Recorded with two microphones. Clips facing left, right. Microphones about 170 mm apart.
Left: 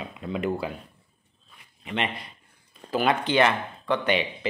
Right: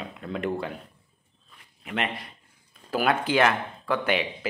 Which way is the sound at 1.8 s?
Centre (ahead or behind).